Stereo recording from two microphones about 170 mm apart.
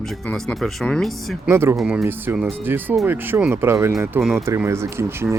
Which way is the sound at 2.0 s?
10° right (ahead or behind).